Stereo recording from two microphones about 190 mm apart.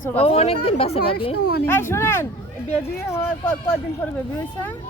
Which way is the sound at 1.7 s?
10° left (ahead or behind).